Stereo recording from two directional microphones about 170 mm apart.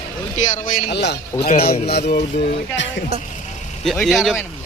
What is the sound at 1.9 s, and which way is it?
Music, 70° left (ahead or behind).